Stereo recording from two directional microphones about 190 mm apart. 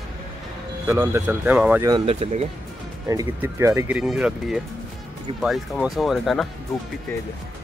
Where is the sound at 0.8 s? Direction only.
10° right (ahead or behind).